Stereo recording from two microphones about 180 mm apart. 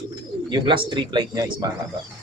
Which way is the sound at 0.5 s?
30° right (ahead or behind).